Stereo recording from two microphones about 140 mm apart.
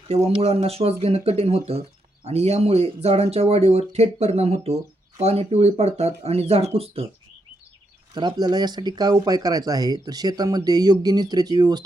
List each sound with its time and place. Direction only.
0.1 s speech: 45° right (ahead or behind)
8.1 s speech: 30° right (ahead or behind)